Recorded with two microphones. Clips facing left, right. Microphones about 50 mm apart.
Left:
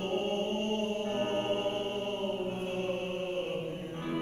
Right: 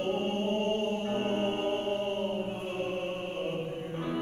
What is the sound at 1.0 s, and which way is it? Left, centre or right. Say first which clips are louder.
Music: right 1 dB; centre.